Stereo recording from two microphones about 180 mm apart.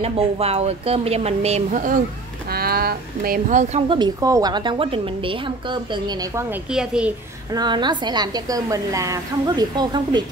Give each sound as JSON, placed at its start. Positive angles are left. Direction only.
{"t": 0.0, "sound": "a woman's voice", "side_deg": -35}
{"t": 2.5, "sound": "speech", "side_deg": -55}
{"t": 3.9, "sound": "a woman's voice", "side_deg": -20}
{"t": 6.5, "sound": "a woman's voice", "side_deg": -5}
{"t": 7.5, "sound": "a woman's voice", "side_deg": -25}